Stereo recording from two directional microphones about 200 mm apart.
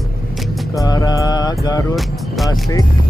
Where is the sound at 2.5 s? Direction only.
15° left (ahead or behind).